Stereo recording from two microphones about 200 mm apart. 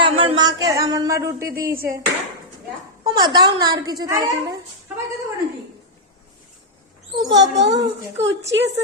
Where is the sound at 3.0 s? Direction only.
20° right (ahead or behind).